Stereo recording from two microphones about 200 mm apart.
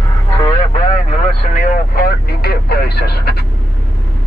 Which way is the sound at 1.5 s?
40° left (ahead or behind).